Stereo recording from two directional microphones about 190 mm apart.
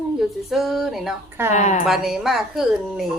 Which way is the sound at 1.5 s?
40° left (ahead or behind).